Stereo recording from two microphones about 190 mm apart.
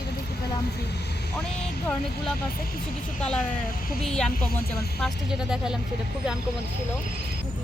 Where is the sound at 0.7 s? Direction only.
60° left (ahead or behind).